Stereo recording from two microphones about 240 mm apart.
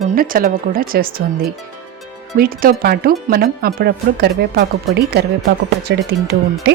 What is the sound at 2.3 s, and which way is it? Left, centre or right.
Speech, right.